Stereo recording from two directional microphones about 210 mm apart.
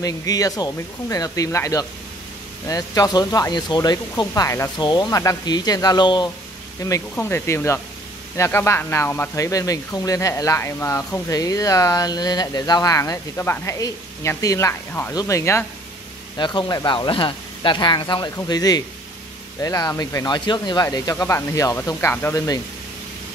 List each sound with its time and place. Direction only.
0.0 s speech: 15° left (ahead or behind)